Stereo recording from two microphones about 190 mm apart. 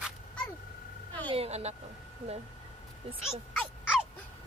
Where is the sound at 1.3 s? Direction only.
35° right (ahead or behind).